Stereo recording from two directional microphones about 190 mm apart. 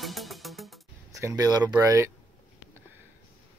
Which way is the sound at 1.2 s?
15° right (ahead or behind).